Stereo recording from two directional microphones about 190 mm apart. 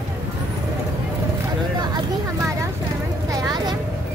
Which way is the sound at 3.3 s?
15° right (ahead or behind).